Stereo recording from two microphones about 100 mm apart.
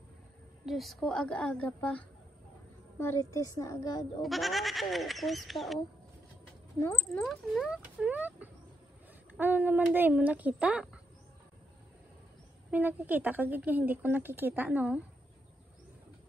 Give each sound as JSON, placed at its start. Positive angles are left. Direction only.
{"t": 0.7, "sound": "a woman's voice", "side_deg": 0}
{"t": 3.0, "sound": "a woman's voice", "side_deg": 30}
{"t": 4.2, "sound": "speech", "side_deg": 0}
{"t": 6.8, "sound": "speech", "side_deg": 25}
{"t": 7.2, "sound": "a woman's voice", "side_deg": -5}
{"t": 12.7, "sound": "a woman's voice", "side_deg": -15}